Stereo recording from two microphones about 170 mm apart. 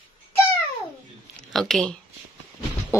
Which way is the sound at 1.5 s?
Centre (ahead or behind).